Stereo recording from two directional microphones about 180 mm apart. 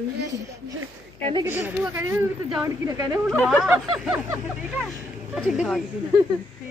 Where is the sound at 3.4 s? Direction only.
5° right (ahead or behind).